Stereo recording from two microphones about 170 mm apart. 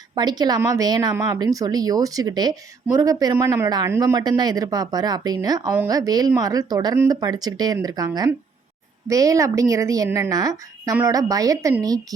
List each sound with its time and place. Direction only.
0.1 s a woman's voice: 25° right (ahead or behind)